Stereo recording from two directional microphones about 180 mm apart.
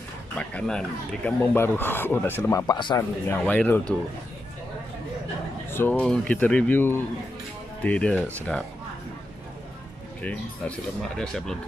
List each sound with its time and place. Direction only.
0.4 s speech: 5° left (ahead or behind)
2.6 s speech: 25° left (ahead or behind)
3.3 s speech: 10° left (ahead or behind)
5.7 s speech: 10° left (ahead or behind)
10.2 s speech: 5° left (ahead or behind)